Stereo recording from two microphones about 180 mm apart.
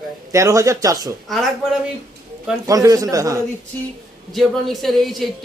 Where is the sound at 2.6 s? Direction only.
20° right (ahead or behind).